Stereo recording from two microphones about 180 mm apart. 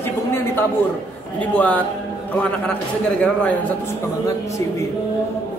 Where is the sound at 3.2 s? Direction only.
5° left (ahead or behind).